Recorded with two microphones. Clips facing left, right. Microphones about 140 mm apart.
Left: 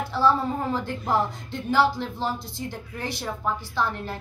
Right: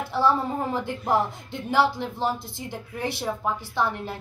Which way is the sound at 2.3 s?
55° right (ahead or behind).